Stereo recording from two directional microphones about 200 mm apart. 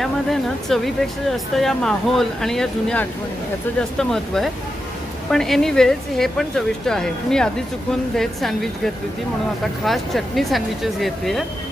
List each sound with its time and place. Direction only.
0.0 s speech: centre (ahead or behind)